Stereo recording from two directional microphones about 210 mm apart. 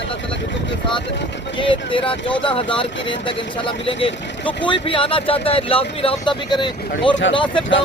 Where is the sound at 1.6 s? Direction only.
25° left (ahead or behind).